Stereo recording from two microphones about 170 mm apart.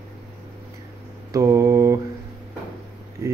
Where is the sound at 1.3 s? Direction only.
20° right (ahead or behind).